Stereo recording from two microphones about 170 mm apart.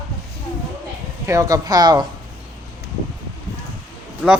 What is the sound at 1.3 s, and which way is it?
Speech, 20° right (ahead or behind).